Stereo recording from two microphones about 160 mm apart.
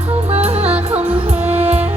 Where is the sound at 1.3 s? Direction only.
10° right (ahead or behind).